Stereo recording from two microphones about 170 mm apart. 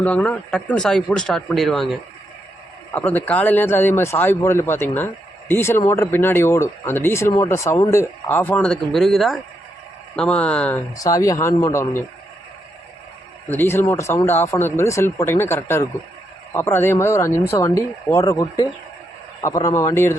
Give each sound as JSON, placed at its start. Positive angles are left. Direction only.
{"t": 0.0, "sound": "speech", "side_deg": 10}
{"t": 10.9, "sound": "speech", "side_deg": 20}
{"t": 13.5, "sound": "speech", "side_deg": 10}